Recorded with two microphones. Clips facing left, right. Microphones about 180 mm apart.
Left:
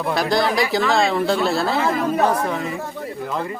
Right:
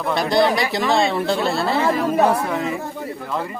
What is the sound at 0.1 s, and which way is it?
Speech, centre (ahead or behind).